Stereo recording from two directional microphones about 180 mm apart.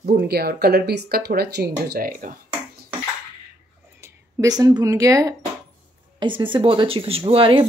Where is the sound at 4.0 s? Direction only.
20° right (ahead or behind).